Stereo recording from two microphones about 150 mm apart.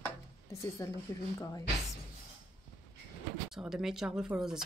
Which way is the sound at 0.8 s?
20° left (ahead or behind).